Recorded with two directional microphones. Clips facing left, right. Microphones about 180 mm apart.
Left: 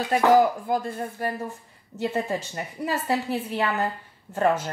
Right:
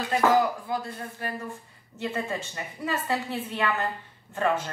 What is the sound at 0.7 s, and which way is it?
A woman's voice, 50° left (ahead or behind).